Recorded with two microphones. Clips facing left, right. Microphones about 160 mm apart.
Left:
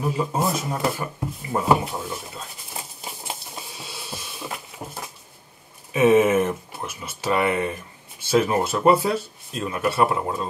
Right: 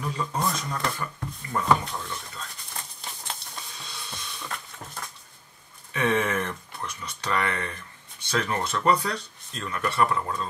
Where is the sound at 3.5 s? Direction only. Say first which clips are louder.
Left 4 dB; 20° left (ahead or behind).